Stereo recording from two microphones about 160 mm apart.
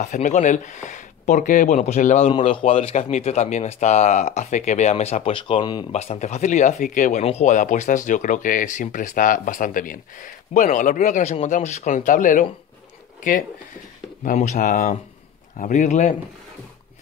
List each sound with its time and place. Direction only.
0.0 s speech: 50° left (ahead or behind)
2.2 s speech: 35° left (ahead or behind)
5.9 s speech: 40° left (ahead or behind)